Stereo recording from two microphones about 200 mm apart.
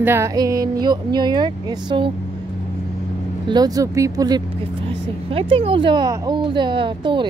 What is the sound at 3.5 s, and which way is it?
A woman's voice, 20° right (ahead or behind).